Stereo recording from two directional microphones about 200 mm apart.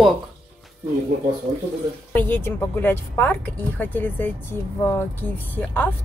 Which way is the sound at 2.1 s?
10° left (ahead or behind).